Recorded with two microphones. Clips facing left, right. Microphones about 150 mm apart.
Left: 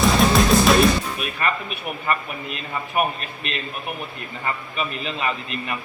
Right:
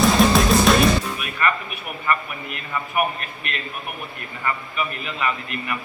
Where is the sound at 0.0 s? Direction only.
Centre (ahead or behind).